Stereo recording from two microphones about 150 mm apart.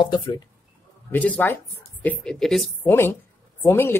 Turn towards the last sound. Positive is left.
turn(degrees=15)  # may be behind; listen again after turning